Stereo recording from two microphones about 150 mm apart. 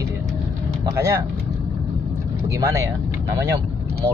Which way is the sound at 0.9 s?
20° right (ahead or behind).